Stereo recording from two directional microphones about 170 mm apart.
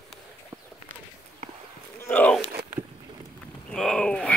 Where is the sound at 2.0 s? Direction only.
10° left (ahead or behind).